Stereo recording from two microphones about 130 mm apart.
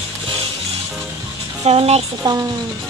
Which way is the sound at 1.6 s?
50° right (ahead or behind).